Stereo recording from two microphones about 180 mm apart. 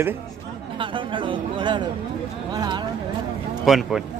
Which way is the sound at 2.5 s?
25° right (ahead or behind).